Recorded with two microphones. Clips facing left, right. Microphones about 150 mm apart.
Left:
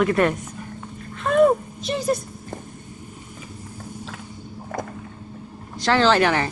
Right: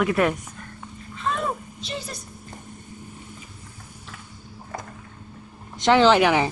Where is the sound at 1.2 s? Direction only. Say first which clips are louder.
Left 11 dB; 55° left (ahead or behind).